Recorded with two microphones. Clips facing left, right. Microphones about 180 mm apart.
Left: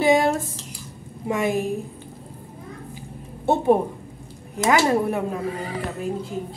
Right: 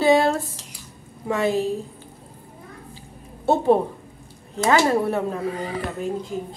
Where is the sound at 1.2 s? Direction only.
15° left (ahead or behind).